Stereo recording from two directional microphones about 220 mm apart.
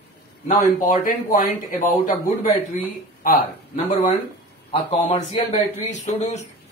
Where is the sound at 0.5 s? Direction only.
40° left (ahead or behind).